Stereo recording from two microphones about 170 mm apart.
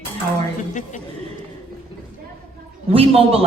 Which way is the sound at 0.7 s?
50° left (ahead or behind).